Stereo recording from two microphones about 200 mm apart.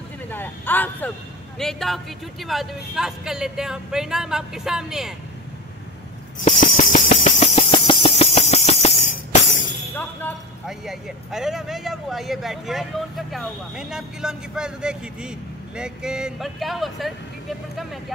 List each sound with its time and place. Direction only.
0.3 s speech: 10° left (ahead or behind)
6.4 s a sound: 40° left (ahead or behind)
10.7 s speech: centre (ahead or behind)